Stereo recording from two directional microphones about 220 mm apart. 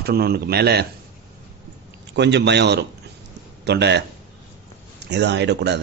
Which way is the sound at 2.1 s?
50° right (ahead or behind).